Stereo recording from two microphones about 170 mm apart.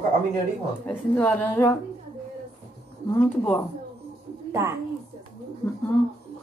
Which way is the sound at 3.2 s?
5° left (ahead or behind).